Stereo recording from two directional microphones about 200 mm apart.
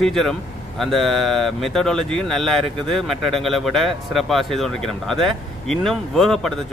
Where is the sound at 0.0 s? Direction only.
Centre (ahead or behind).